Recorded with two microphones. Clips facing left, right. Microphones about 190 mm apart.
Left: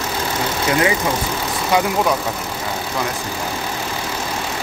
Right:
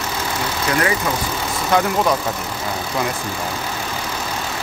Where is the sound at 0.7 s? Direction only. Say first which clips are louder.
Left 2 dB; 20° left (ahead or behind).